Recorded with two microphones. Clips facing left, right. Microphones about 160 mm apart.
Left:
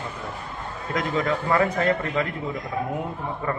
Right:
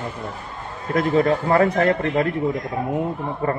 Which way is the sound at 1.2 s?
35° right (ahead or behind).